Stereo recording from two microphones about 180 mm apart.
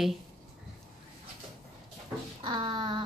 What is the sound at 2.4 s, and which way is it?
Child singing, 25° right (ahead or behind).